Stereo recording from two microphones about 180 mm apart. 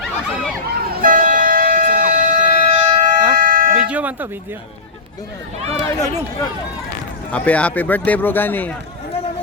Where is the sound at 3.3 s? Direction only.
50° right (ahead or behind).